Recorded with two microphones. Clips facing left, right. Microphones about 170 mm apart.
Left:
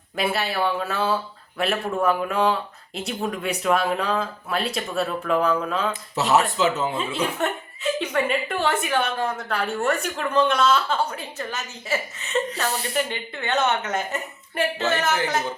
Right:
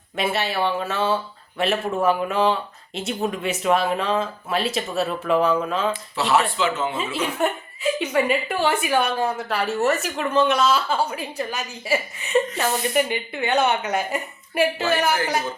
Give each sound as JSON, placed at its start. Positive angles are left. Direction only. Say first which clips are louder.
{"t": 0.2, "sound": "speech", "louder": "right 1 dB", "side_deg": 0}
{"t": 6.1, "sound": "speech", "louder": "left 1 dB", "side_deg": 40}
{"t": 6.9, "sound": "a woman's voice", "louder": "even", "side_deg": -5}